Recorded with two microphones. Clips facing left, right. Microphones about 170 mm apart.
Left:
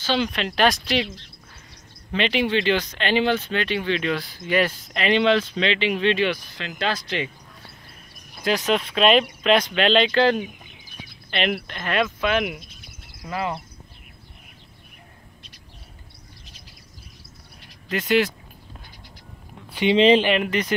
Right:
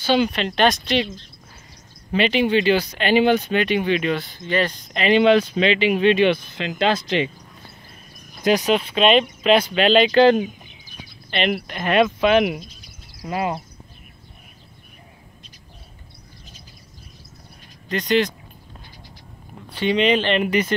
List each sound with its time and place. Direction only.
0.0 s speech: 10° right (ahead or behind)
2.1 s speech: 5° right (ahead or behind)
4.1 s speech: centre (ahead or behind)
4.9 s speech: centre (ahead or behind)
5.2 s speech: 15° right (ahead or behind)
8.5 s speech: 15° right (ahead or behind)
8.7 s speech: 5° right (ahead or behind)
10.1 s speech: 20° right (ahead or behind)
11.2 s speech: centre (ahead or behind)
11.7 s speech: 20° right (ahead or behind)
17.8 s speech: 5° left (ahead or behind)
19.7 s speech: 15° left (ahead or behind)
20.4 s speech: 10° right (ahead or behind)